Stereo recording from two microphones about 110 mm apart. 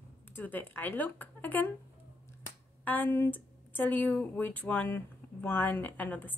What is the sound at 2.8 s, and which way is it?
Speech, 15° left (ahead or behind).